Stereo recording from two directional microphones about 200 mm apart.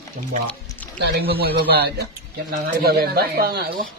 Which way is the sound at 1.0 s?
55° right (ahead or behind).